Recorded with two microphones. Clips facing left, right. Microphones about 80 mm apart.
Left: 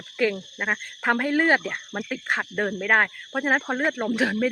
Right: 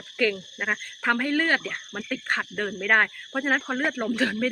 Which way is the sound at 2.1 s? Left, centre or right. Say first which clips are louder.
Even; centre.